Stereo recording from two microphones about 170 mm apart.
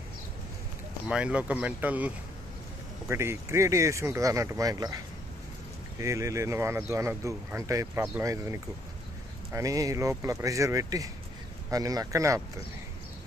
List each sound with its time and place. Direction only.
1.0 s speech: 5° right (ahead or behind)
5.9 s speech: 15° right (ahead or behind)